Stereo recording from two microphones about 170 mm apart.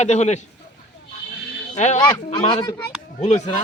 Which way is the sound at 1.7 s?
45° left (ahead or behind).